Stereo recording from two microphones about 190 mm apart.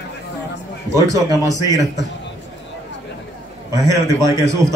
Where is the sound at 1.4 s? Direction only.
20° right (ahead or behind).